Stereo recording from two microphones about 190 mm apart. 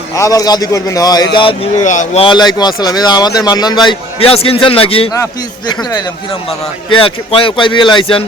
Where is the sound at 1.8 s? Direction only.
40° left (ahead or behind).